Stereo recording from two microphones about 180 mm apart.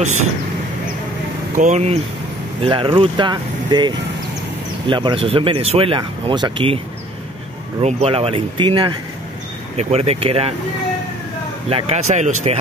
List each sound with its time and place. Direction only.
0.0 s speech: 40° right (ahead or behind)
1.6 s speech: 40° right (ahead or behind)
7.8 s speech: 35° right (ahead or behind)
11.7 s speech: 40° right (ahead or behind)